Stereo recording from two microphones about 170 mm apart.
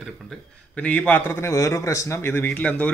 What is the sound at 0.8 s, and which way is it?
A man's voice, 10° left (ahead or behind).